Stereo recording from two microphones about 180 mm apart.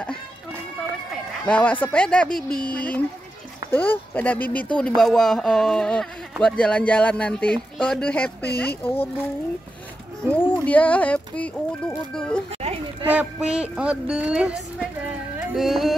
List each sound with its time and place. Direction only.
1.4 s speech: 10° left (ahead or behind)
2.2 s speech: 55° left (ahead or behind)
2.7 s speech: 5° left (ahead or behind)
10.2 s speech: 5° left (ahead or behind)
12.6 s children playing: 35° right (ahead or behind)
13.0 s speech: 10° right (ahead or behind)
15.3 s a sound: centre (ahead or behind)